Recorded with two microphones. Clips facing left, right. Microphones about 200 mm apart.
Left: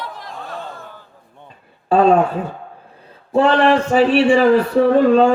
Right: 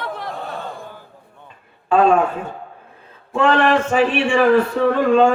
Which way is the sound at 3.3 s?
35° left (ahead or behind).